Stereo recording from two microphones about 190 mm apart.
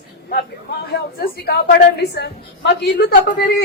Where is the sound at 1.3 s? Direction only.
60° left (ahead or behind).